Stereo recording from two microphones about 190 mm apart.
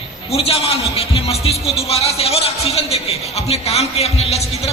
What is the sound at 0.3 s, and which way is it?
A man's voice, 30° left (ahead or behind).